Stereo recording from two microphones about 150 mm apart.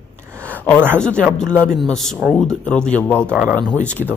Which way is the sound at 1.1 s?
15° right (ahead or behind).